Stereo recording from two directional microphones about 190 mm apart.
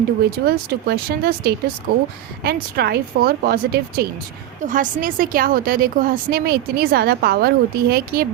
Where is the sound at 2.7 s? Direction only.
55° right (ahead or behind).